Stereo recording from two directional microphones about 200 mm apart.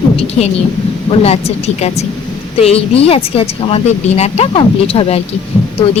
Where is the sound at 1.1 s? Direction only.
30° left (ahead or behind).